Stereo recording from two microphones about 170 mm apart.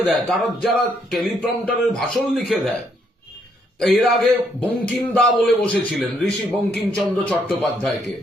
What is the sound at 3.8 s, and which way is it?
A man's voice, centre (ahead or behind).